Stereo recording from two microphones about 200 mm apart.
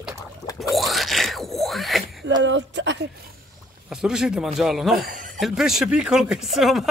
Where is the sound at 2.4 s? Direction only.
65° right (ahead or behind).